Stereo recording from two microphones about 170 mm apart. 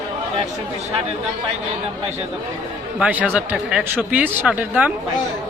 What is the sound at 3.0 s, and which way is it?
Speech, 10° right (ahead or behind).